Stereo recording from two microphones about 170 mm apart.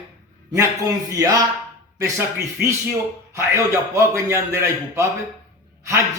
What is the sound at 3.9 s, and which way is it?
A man's voice, 15° right (ahead or behind).